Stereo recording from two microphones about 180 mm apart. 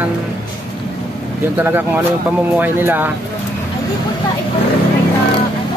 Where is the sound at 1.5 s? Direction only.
10° right (ahead or behind).